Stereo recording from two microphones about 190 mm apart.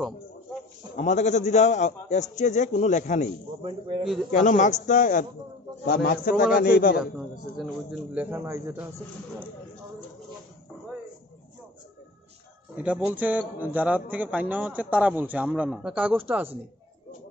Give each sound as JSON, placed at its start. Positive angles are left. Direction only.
{"t": 0.9, "sound": "a man's voice", "side_deg": 40}
{"t": 3.6, "sound": "speech", "side_deg": -30}
{"t": 4.3, "sound": "a man's voice", "side_deg": 40}
{"t": 5.9, "sound": "a man's voice", "side_deg": 55}
{"t": 7.0, "sound": "a man's voice", "side_deg": 0}
{"t": 12.7, "sound": "a man's voice", "side_deg": -5}